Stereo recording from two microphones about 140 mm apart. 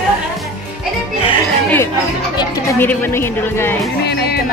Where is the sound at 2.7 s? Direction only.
15° left (ahead or behind).